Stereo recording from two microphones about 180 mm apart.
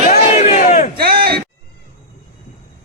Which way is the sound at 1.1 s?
60° right (ahead or behind).